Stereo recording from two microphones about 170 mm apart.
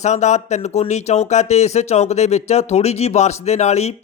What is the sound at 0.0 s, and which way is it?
Speech, 45° left (ahead or behind).